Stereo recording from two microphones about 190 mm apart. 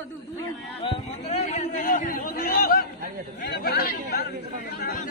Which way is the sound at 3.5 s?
55° left (ahead or behind).